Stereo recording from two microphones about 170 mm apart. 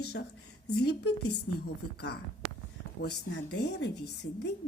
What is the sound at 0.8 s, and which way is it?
A woman's voice, 75° left (ahead or behind).